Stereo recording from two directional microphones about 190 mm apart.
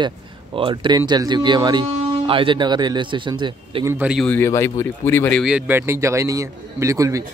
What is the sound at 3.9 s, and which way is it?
Speech, 5° right (ahead or behind).